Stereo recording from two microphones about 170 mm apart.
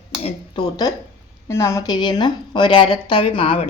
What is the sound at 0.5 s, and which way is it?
A woman's voice, 25° left (ahead or behind).